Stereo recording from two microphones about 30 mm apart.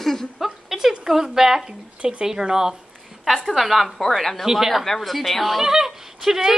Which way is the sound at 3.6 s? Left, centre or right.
Centre.